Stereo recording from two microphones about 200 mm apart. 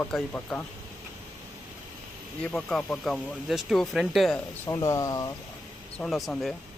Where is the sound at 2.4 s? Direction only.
5° left (ahead or behind).